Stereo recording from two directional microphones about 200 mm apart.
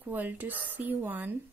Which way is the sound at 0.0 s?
10° right (ahead or behind).